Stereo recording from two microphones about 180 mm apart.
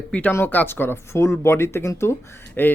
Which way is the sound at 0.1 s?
10° left (ahead or behind).